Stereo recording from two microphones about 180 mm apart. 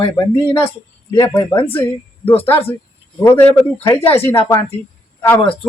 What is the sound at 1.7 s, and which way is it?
Speech, 10° left (ahead or behind).